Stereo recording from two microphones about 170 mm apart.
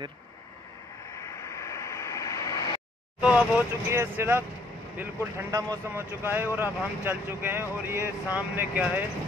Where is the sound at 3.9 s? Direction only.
15° right (ahead or behind).